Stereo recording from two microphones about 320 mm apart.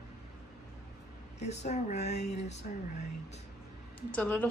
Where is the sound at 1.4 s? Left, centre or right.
Left.